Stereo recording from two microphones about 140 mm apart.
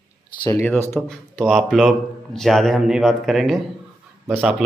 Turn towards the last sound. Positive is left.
turn(degrees=0)  # may be behind; listen again after turning